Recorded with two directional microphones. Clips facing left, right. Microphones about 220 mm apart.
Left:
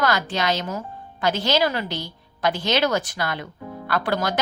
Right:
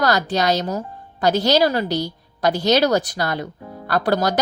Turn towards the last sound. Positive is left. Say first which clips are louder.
# right 4 dB
turn(degrees=-40)  # may be behind; listen again after turning